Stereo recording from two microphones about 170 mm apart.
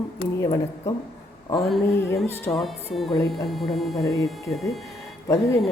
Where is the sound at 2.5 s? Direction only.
Centre (ahead or behind).